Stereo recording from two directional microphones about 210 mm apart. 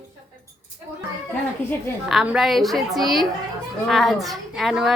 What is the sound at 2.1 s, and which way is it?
A woman's voice, centre (ahead or behind).